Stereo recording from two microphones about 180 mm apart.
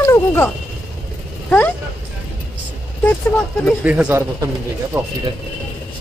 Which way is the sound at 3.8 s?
10° right (ahead or behind).